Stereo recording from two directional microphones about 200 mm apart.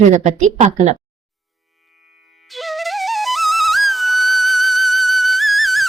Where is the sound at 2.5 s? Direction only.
Centre (ahead or behind).